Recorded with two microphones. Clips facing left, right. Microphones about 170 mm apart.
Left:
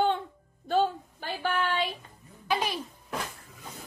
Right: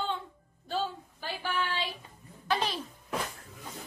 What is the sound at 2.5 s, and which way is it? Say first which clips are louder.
Music: left 1 dB; 10° left (ahead or behind).